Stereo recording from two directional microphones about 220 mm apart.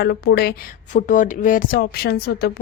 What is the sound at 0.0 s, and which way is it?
Speech, 45° left (ahead or behind).